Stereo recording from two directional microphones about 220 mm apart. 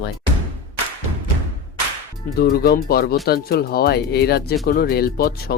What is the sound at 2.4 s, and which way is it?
Speech, 45° left (ahead or behind).